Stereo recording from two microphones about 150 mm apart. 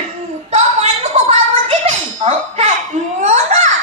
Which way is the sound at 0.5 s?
50° right (ahead or behind).